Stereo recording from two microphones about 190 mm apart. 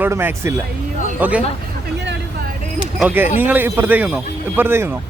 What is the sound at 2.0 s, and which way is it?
Vehicle, 65° right (ahead or behind).